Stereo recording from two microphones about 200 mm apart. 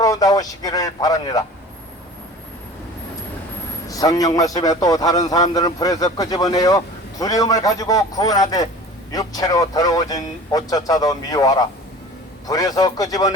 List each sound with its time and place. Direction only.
0.0 s a man's voice: 20° left (ahead or behind)
3.8 s a man's voice: 15° left (ahead or behind)